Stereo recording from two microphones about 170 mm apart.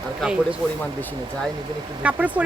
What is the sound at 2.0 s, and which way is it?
Speech, 10° right (ahead or behind).